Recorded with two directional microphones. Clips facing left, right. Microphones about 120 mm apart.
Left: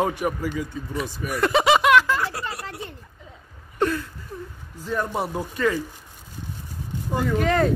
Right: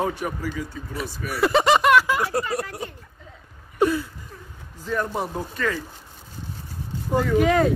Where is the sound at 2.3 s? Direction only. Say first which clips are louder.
Right 7 dB; 45° right (ahead or behind).